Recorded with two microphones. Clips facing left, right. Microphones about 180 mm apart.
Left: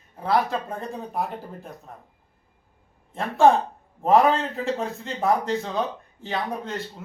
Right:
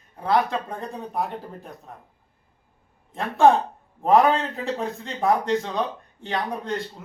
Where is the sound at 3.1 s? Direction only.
Centre (ahead or behind).